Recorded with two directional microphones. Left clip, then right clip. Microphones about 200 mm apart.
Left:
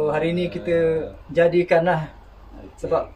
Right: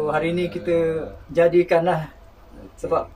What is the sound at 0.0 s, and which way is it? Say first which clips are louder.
Speech: even; 10° left (ahead or behind).